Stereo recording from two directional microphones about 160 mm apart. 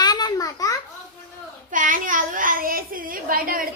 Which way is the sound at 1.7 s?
55° right (ahead or behind).